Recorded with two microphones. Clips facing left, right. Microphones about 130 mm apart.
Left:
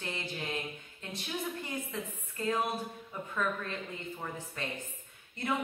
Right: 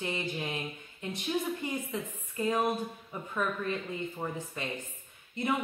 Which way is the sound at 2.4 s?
15° right (ahead or behind).